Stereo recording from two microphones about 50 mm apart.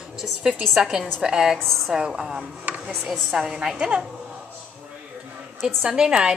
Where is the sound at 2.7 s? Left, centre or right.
Right.